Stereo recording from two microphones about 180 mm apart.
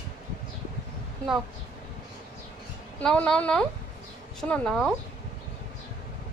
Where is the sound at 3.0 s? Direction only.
5° left (ahead or behind).